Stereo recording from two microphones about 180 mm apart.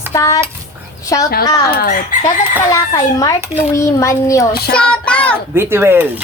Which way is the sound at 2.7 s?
20° left (ahead or behind).